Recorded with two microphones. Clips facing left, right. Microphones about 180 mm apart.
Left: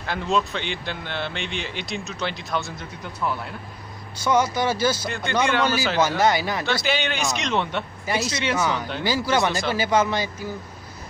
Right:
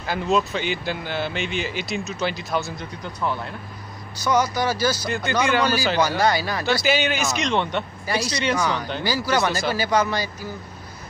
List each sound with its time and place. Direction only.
0.0 s speech: 5° right (ahead or behind)
4.2 s speech: 25° left (ahead or behind)
5.0 s speech: centre (ahead or behind)
6.0 s speech: 20° left (ahead or behind)
6.6 s speech: 5° right (ahead or behind)
9.0 s speech: 25° left (ahead or behind)